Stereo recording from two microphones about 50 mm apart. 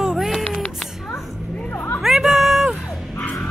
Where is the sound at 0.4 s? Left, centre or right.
Centre.